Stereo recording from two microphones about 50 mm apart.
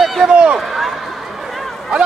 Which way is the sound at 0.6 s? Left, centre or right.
Centre.